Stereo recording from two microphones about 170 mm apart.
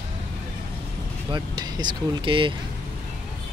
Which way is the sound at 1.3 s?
25° right (ahead or behind).